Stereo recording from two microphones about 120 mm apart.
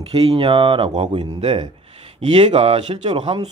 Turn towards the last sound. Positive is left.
turn(degrees=-50)  # may be behind; listen again after turning